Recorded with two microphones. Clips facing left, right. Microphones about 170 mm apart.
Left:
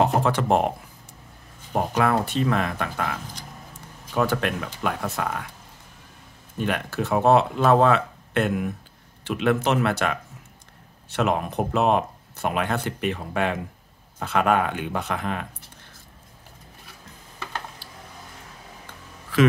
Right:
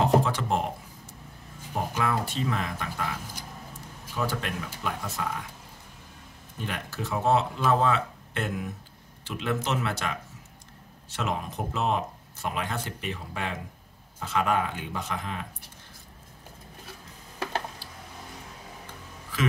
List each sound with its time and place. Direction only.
0.0 s speech: 60° left (ahead or behind)
1.7 s speech: 65° left (ahead or behind)
6.6 s speech: 65° left (ahead or behind)